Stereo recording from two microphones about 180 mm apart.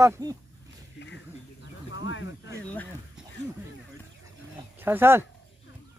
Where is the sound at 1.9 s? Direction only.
90° left.